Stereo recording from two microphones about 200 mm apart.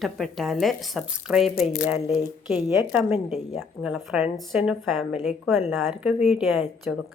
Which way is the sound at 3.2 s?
35° left (ahead or behind).